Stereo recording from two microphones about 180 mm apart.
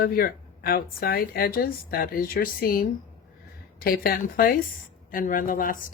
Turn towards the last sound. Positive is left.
turn(degrees=50)  # may be behind; listen again after turning